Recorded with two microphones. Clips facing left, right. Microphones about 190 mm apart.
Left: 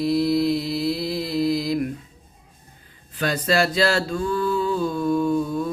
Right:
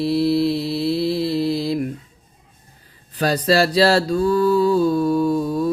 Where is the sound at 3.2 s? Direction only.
35° right (ahead or behind).